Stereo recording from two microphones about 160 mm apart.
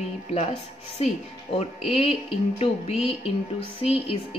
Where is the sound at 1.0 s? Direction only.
40° left (ahead or behind).